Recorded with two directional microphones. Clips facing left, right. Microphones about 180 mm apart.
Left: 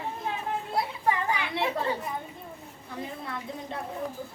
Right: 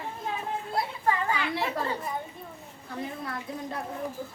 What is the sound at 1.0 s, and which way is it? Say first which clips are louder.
Children playing: right 1 dB; 15° left (ahead or behind).